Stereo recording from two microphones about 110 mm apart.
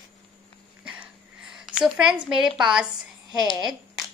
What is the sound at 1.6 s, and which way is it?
A woman's voice, 5° right (ahead or behind).